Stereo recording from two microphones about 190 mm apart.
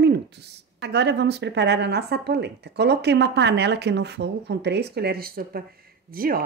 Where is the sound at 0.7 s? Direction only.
65° right (ahead or behind).